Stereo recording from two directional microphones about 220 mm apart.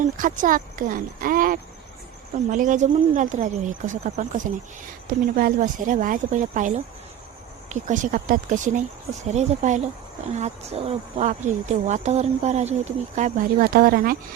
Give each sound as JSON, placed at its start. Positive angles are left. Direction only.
{"t": 0.0, "sound": "speech", "side_deg": -35}